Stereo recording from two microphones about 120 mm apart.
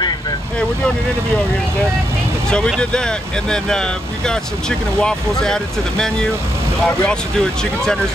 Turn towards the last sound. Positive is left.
turn(degrees=5)  # may be behind; listen again after turning